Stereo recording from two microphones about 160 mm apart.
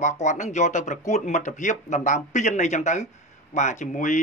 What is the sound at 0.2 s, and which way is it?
Speech, 50° left (ahead or behind).